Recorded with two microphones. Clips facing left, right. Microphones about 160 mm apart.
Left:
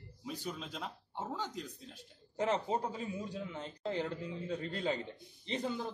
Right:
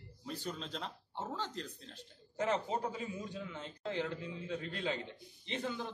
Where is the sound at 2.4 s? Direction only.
30° left (ahead or behind).